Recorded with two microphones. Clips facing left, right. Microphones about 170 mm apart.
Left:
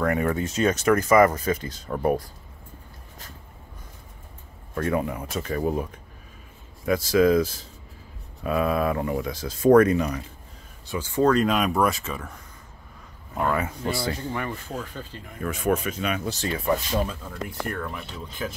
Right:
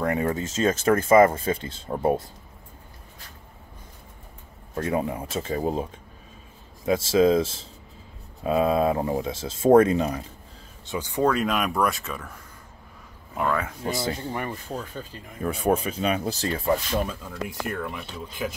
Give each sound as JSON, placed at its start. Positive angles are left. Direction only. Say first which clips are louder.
{"t": 0.0, "sound": "speech", "louder": "left 1 dB", "side_deg": -25}
{"t": 4.7, "sound": "speech", "louder": "even", "side_deg": -25}
{"t": 10.9, "sound": "speech", "louder": "left 2 dB", "side_deg": -15}
{"t": 13.4, "sound": "speech", "louder": "left 1 dB", "side_deg": 5}
{"t": 13.8, "sound": "speech", "louder": "even", "side_deg": -20}
{"t": 15.4, "sound": "speech", "louder": "right 1 dB", "side_deg": -35}
{"t": 17.5, "sound": "speech", "louder": "even", "side_deg": -10}